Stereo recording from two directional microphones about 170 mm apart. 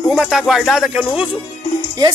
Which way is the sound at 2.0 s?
25° right (ahead or behind).